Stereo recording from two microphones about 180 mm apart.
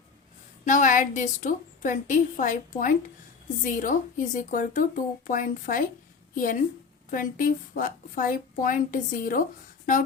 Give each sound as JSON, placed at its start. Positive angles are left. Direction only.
{"t": 0.6, "sound": "a woman's voice", "side_deg": 45}